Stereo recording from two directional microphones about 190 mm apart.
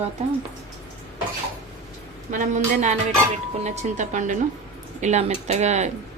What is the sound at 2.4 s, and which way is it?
Speech, 40° right (ahead or behind).